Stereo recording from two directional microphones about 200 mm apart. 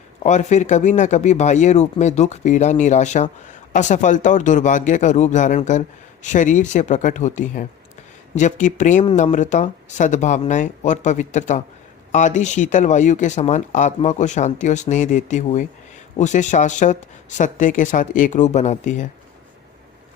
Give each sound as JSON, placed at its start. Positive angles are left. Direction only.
{"t": 0.2, "sound": "speech", "side_deg": 35}